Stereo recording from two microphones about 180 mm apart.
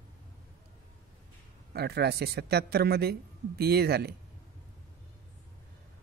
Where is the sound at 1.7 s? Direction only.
60° right (ahead or behind).